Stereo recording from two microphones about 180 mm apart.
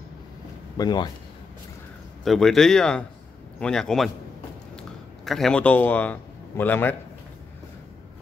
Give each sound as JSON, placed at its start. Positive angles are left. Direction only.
{"t": 0.7, "sound": "speech", "side_deg": 25}
{"t": 2.2, "sound": "a man's voice", "side_deg": 0}